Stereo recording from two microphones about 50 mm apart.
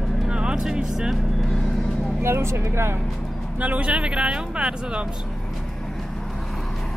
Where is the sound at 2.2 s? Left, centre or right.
Right.